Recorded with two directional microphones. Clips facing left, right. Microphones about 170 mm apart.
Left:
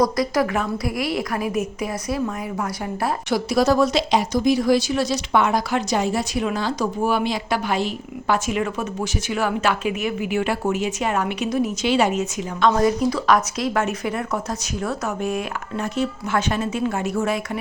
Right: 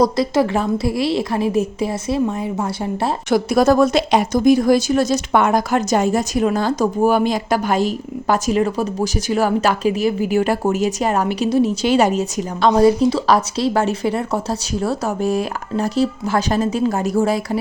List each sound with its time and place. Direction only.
0.0 s a woman's voice: 25° right (ahead or behind)
3.2 s speech: 50° right (ahead or behind); by 17.6 s 35° right (ahead or behind)